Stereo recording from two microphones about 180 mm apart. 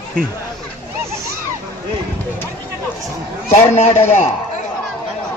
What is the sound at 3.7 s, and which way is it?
Speech, 40° left (ahead or behind).